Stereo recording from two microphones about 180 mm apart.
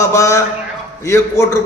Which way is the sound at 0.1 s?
15° left (ahead or behind).